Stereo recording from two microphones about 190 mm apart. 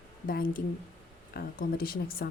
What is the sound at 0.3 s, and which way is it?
A woman's voice, 50° left (ahead or behind).